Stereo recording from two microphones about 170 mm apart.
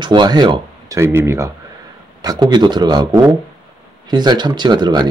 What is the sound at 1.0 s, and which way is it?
Speech, 15° right (ahead or behind).